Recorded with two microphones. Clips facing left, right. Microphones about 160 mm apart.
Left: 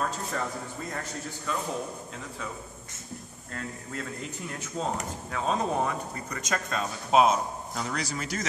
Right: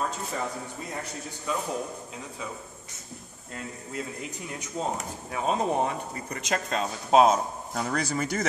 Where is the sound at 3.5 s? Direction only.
15° right (ahead or behind); by 8.5 s 55° right (ahead or behind).